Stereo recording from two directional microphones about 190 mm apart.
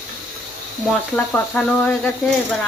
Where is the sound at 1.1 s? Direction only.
5° left (ahead or behind).